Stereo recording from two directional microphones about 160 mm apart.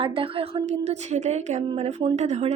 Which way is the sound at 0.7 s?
45° right (ahead or behind).